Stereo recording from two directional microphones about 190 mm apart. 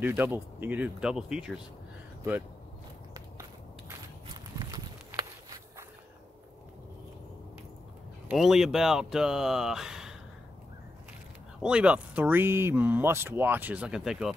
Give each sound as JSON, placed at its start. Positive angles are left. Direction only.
{"t": 0.0, "sound": "speech", "side_deg": -10}
{"t": 4.3, "sound": "a sound", "side_deg": -20}
{"t": 8.3, "sound": "speech", "side_deg": 0}
{"t": 11.6, "sound": "speech", "side_deg": -5}